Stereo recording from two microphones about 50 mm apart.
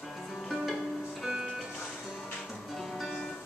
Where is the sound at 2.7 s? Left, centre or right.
Centre.